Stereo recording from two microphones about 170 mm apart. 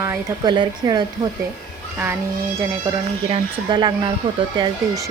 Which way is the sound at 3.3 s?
25° right (ahead or behind).